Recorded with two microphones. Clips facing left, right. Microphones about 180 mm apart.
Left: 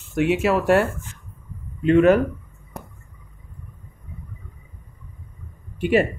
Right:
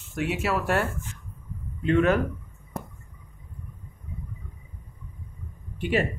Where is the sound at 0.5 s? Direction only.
10° left (ahead or behind).